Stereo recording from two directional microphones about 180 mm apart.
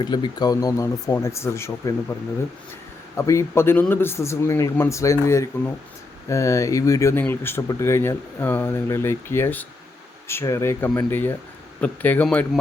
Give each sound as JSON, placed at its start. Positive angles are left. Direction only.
{"t": 0.0, "sound": "speech", "side_deg": 25}
{"t": 3.2, "sound": "speech", "side_deg": 15}